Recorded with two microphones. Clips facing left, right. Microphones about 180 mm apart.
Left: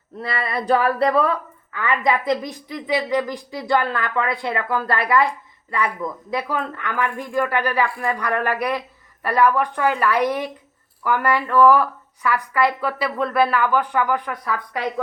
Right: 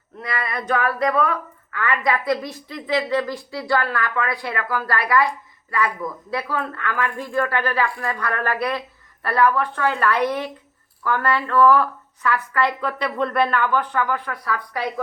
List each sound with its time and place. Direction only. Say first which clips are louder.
0.2 s a woman's voice: left 2 dB; 30° left (ahead or behind)
6.3 s a woman's voice: left 1 dB; 15° left (ahead or behind)